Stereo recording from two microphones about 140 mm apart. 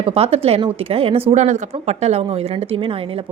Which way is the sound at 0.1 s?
45° right (ahead or behind).